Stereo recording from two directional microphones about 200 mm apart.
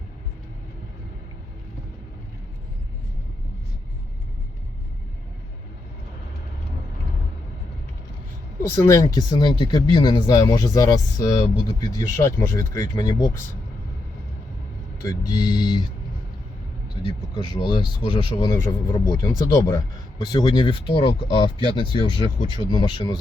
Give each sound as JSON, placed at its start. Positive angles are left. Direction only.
{"t": 8.6, "sound": "speech", "side_deg": 10}
{"t": 15.0, "sound": "speech", "side_deg": 20}
{"t": 16.9, "sound": "speech", "side_deg": 20}